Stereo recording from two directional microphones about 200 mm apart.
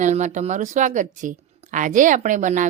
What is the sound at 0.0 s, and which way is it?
Speech, 35° right (ahead or behind).